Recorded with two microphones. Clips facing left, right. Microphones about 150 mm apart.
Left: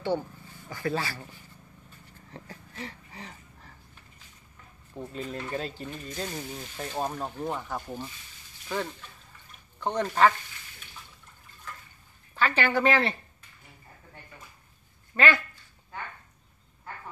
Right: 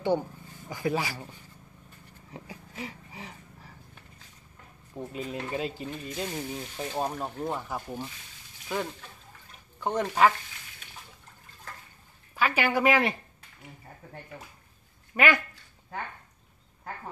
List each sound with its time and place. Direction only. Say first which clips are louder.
0.0 s speech: right 2 dB; 15° right (ahead or behind)
2.3 s a sound: right 2 dB; 10° right (ahead or behind)
4.9 s speech: right 1 dB; 5° right (ahead or behind)
12.4 s speech: even; 10° right (ahead or behind)
14.3 s speech: right 5 dB; 35° right (ahead or behind)
15.1 s speech: right 1 dB; 15° right (ahead or behind)